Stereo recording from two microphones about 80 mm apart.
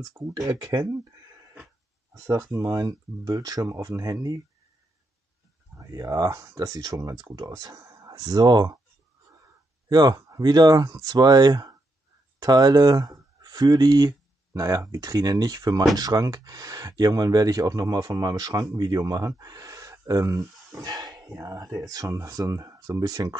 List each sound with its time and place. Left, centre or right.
0.2 s speech: right
2.2 s speech: right
5.8 s speech: right
9.8 s speech: right
14.5 s speech: right